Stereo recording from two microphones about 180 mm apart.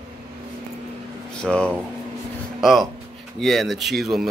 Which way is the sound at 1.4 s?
5° left (ahead or behind).